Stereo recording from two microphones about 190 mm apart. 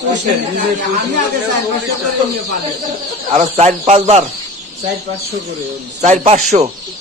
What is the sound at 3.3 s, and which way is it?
Speech, 35° right (ahead or behind).